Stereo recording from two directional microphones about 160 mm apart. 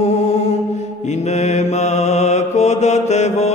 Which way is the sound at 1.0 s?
45° left (ahead or behind).